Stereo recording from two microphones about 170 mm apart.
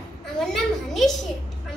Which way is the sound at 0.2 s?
Centre (ahead or behind).